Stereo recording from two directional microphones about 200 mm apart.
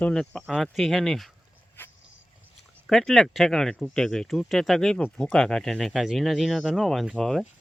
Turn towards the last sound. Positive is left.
turn(degrees=0)  # may be behind; listen again after turning